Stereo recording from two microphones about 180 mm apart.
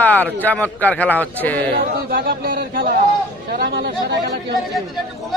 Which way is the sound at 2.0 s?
55° right (ahead or behind).